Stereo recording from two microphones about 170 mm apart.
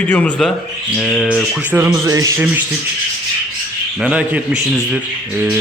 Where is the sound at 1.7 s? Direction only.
10° right (ahead or behind).